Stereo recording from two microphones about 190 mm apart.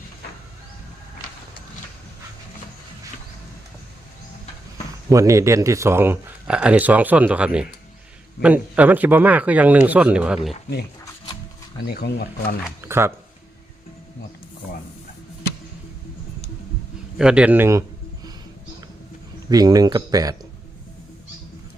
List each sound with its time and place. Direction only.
5.0 s speech: 15° right (ahead or behind)
11.9 s speech: 55° left (ahead or behind)
12.8 s speech: 15° right (ahead or behind)
17.2 s speech: 5° right (ahead or behind)
19.5 s speech: 20° right (ahead or behind)